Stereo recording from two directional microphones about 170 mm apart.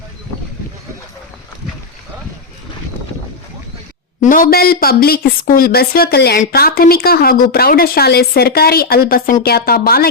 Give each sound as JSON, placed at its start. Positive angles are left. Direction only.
{"t": 4.2, "sound": "speech", "side_deg": 55}